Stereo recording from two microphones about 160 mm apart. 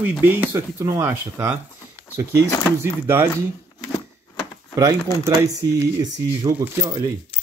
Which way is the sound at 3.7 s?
20° left (ahead or behind).